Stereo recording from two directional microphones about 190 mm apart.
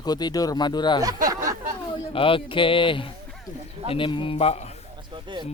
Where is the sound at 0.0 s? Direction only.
20° left (ahead or behind).